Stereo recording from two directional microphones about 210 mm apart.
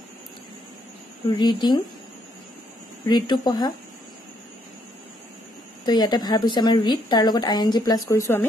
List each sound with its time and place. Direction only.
1.4 s a woman's voice: 20° left (ahead or behind)
3.1 s a woman's voice: 20° left (ahead or behind)
5.9 s a woman's voice: 20° left (ahead or behind)